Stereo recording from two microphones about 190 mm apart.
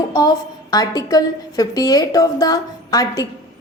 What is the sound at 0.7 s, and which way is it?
A woman's voice, 20° left (ahead or behind).